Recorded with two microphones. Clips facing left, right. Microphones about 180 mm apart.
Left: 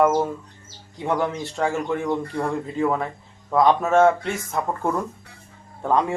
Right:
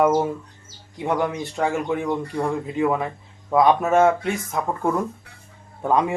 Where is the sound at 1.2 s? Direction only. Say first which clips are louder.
Right 1 dB; 15° right (ahead or behind).